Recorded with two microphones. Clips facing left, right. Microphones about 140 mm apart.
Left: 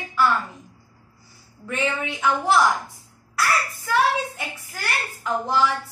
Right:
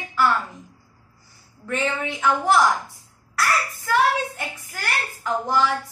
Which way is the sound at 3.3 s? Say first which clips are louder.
Even; 15° left (ahead or behind).